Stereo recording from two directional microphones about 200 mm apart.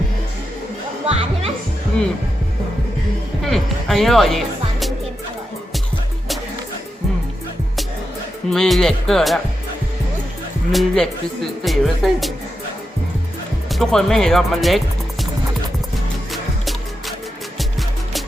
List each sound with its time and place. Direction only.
1.0 s music: 30° right (ahead or behind)
3.4 s music: centre (ahead or behind)
8.4 s speech: centre (ahead or behind)
10.7 s speech: centre (ahead or behind)
13.7 s speech: centre (ahead or behind)
16.3 s music: centre (ahead or behind)